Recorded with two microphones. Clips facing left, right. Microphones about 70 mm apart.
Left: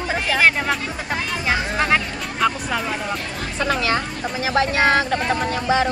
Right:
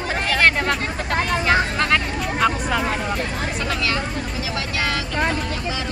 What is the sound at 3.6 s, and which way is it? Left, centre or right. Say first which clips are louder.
Speech: left 6 dB; left.